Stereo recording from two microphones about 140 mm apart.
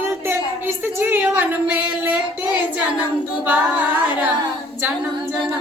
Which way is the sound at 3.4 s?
10° right (ahead or behind).